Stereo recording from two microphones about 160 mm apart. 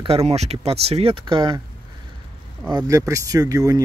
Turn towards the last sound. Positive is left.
turn(degrees=-20)  # may be behind; listen again after turning